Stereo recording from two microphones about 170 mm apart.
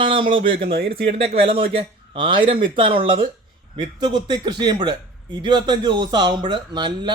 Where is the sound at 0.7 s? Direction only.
65° right (ahead or behind).